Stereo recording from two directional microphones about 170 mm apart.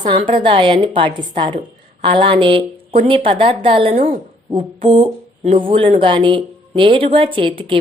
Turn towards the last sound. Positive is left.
turn(degrees=-30)  # may be behind; listen again after turning